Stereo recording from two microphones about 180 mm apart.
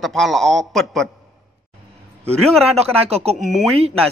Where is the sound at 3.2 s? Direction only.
45° right (ahead or behind).